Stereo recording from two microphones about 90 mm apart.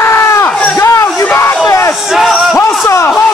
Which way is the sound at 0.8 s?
35° left (ahead or behind).